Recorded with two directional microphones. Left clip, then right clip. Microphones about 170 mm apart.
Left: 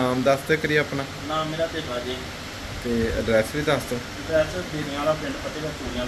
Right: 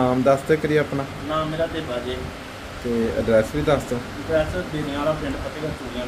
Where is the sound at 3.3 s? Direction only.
10° right (ahead or behind).